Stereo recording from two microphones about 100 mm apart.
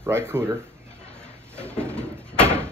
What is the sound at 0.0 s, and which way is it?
Speech, 25° right (ahead or behind).